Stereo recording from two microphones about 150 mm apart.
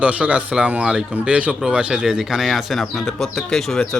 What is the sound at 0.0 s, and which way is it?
Speech, 10° right (ahead or behind).